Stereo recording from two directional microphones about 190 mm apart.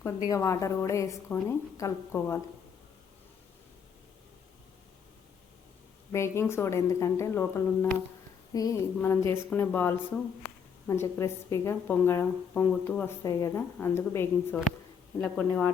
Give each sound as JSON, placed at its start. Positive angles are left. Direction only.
{"t": 0.3, "sound": "a woman's voice", "side_deg": 15}
{"t": 6.1, "sound": "a woman's voice", "side_deg": 15}